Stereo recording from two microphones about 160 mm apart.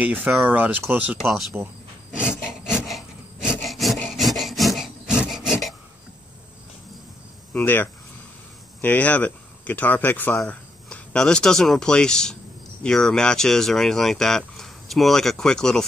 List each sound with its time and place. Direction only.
0.0 s speech: 5° right (ahead or behind)
2.4 s rub: 5° right (ahead or behind)
7.5 s speech: 10° left (ahead or behind)